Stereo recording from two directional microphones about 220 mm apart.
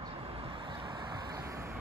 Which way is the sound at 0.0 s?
25° right (ahead or behind).